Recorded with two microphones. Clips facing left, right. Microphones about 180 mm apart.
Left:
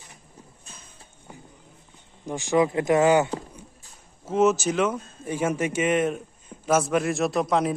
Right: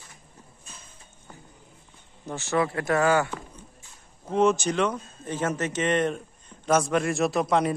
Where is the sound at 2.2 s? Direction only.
15° left (ahead or behind).